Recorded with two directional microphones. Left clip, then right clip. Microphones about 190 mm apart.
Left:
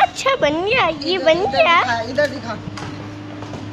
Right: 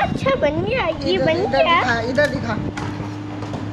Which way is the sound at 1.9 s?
60° right (ahead or behind).